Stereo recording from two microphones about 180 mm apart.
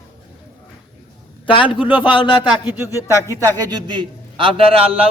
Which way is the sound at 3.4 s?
20° right (ahead or behind).